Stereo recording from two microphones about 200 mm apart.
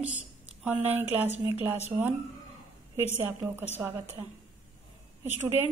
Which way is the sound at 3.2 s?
10° right (ahead or behind).